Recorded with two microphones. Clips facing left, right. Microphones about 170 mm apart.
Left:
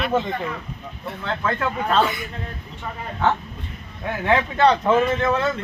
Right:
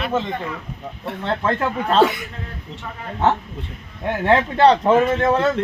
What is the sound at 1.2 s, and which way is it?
Speech, 30° right (ahead or behind).